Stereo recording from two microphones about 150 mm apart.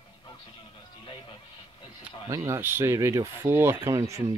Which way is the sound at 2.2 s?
20° right (ahead or behind).